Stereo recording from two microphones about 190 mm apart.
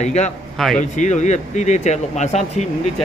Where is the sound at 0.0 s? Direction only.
35° left (ahead or behind).